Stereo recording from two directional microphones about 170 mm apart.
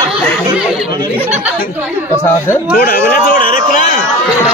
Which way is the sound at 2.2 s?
15° left (ahead or behind).